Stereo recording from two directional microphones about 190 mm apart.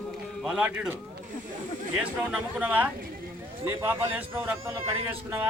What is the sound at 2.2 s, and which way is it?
Speech, 10° right (ahead or behind).